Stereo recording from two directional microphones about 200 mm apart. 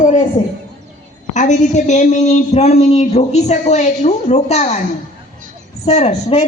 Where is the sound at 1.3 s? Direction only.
35° left (ahead or behind).